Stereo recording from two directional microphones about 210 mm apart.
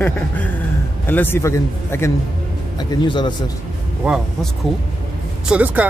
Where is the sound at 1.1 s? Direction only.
10° left (ahead or behind).